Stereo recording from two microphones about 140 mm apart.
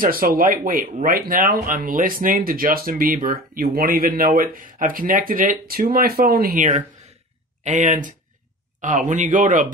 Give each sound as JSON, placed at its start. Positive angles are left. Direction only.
{"t": 0.0, "sound": "speech", "side_deg": -90}
{"t": 7.6, "sound": "speech", "side_deg": -60}